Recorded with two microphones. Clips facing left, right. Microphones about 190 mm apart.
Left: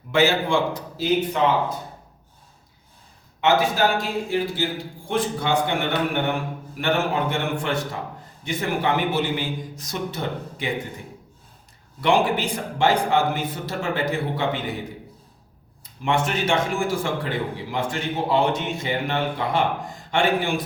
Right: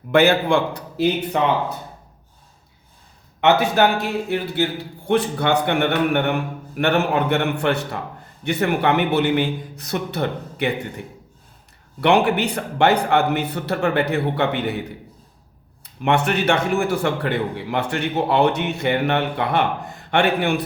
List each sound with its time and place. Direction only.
0.1 s a man's voice: 60° right (ahead or behind)
3.4 s a man's voice: 65° right (ahead or behind)
11.9 s a man's voice: 65° right (ahead or behind)
15.8 s a man's voice: 65° right (ahead or behind)